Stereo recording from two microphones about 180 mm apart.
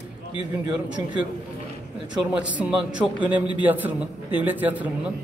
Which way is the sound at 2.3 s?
5° right (ahead or behind).